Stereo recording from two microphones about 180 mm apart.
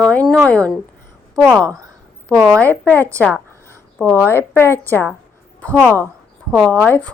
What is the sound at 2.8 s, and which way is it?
A woman's voice, 10° left (ahead or behind).